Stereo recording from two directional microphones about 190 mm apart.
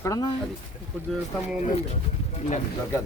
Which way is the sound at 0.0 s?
20° left (ahead or behind).